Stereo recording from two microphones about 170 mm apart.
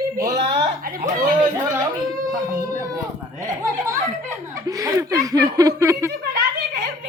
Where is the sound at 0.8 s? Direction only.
60° right (ahead or behind).